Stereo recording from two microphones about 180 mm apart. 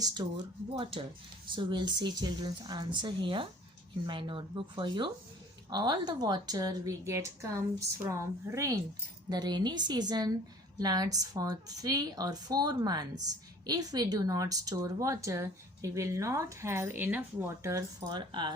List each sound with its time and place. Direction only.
0.0 s a woman's voice: 25° right (ahead or behind)